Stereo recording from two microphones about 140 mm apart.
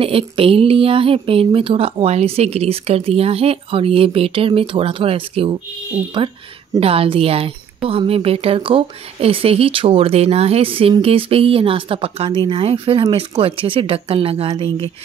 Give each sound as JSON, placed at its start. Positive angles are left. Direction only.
{"t": 0.0, "sound": "a woman's voice", "side_deg": -40}